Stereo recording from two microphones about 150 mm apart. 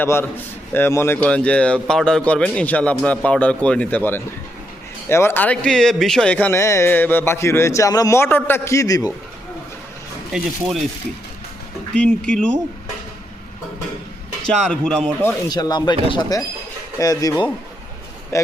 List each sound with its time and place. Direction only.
0.0 s speech: 15° left (ahead or behind)
11.9 s speech: 5° left (ahead or behind)
14.4 s speech: 5° left (ahead or behind)
15.4 s speech: 25° left (ahead or behind)